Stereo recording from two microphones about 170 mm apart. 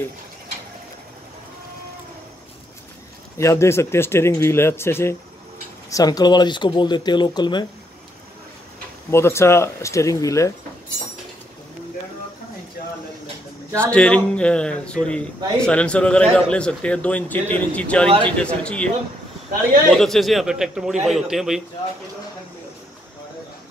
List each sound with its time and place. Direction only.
3.3 s a man's voice: 15° left (ahead or behind)
9.1 s a man's voice: 15° left (ahead or behind)
13.7 s a man's voice: 5° left (ahead or behind)
19.9 s a man's voice: centre (ahead or behind)